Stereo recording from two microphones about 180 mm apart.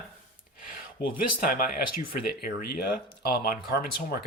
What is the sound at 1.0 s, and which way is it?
Speech, 55° left (ahead or behind).